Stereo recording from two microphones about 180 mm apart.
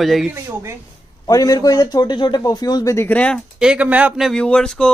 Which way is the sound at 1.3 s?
20° left (ahead or behind).